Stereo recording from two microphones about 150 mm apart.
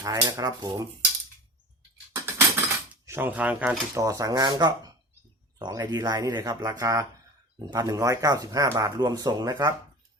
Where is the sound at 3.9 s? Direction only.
20° right (ahead or behind).